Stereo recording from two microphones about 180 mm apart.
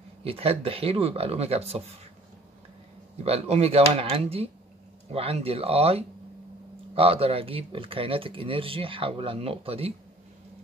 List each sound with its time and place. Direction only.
0.2 s speech: 35° right (ahead or behind)
3.3 s speech: 35° right (ahead or behind)